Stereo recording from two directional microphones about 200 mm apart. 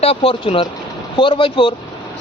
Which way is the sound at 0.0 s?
30° left (ahead or behind).